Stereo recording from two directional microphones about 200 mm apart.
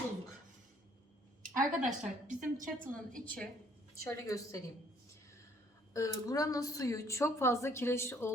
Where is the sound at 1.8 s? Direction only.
40° right (ahead or behind).